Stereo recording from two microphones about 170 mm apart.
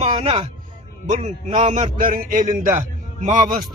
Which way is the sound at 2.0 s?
55° right (ahead or behind).